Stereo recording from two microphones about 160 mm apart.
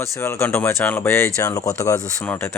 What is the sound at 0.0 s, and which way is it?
Speech, 15° left (ahead or behind).